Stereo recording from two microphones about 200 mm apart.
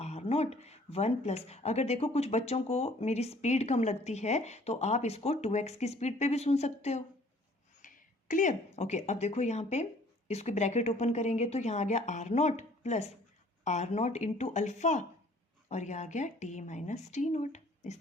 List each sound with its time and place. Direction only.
0.0 s speech: 30° left (ahead or behind)